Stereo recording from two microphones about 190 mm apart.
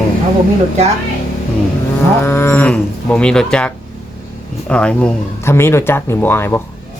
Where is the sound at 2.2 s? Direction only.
10° left (ahead or behind).